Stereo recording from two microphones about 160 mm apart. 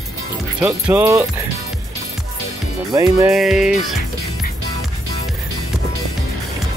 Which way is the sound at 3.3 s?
Centre (ahead or behind).